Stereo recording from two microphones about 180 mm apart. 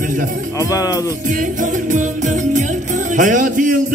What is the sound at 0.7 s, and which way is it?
Speech, 20° left (ahead or behind).